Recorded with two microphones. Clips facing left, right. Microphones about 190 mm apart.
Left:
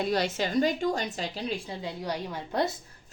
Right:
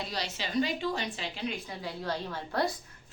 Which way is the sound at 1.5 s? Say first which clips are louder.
Left 3 dB; 15° left (ahead or behind).